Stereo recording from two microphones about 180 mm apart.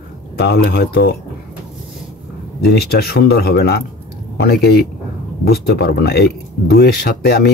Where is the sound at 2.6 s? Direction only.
60° left (ahead or behind).